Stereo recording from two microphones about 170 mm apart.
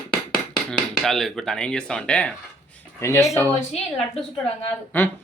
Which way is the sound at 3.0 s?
15° left (ahead or behind).